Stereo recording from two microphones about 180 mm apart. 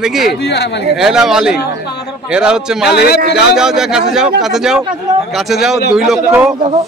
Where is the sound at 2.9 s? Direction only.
65° left (ahead or behind).